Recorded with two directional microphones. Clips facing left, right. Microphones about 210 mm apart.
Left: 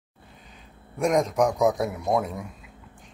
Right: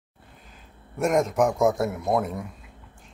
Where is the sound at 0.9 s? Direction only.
5° right (ahead or behind).